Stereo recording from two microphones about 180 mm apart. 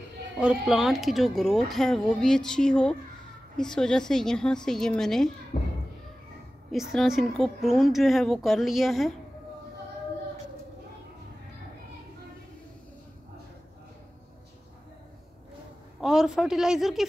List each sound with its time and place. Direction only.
0.4 s speech: 5° right (ahead or behind)
5.5 s thump: 40° left (ahead or behind)
6.7 s speech: centre (ahead or behind)
16.0 s speech: 5° right (ahead or behind)